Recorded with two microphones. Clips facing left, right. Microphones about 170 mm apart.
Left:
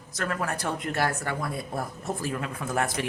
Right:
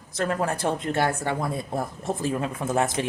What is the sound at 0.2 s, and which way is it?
Speech, 30° right (ahead or behind).